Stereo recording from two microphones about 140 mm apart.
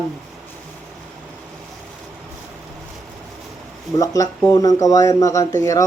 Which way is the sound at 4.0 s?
25° left (ahead or behind).